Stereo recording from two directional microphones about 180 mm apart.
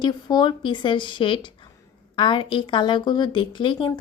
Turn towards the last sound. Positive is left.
turn(degrees=30)  # may be behind; listen again after turning